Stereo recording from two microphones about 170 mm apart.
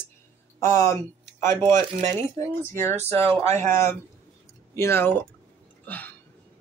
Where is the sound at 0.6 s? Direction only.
15° left (ahead or behind).